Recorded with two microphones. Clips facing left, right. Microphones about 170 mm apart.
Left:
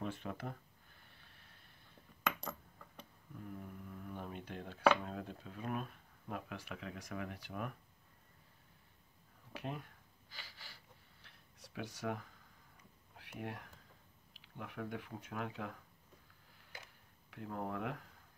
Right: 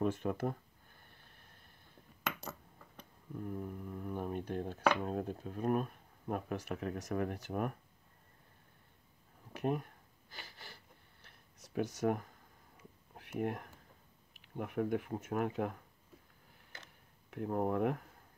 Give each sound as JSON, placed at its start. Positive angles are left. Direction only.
{"t": 0.0, "sound": "speech", "side_deg": -45}
{"t": 3.3, "sound": "speech", "side_deg": -45}
{"t": 9.6, "sound": "speech", "side_deg": -50}
{"t": 10.3, "sound": "gasp", "side_deg": -55}
{"t": 11.6, "sound": "speech", "side_deg": -45}
{"t": 13.1, "sound": "a sound", "side_deg": -50}
{"t": 14.4, "sound": "speech", "side_deg": -50}
{"t": 17.3, "sound": "speech", "side_deg": -45}